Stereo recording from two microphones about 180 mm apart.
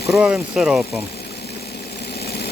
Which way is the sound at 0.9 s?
65° left (ahead or behind).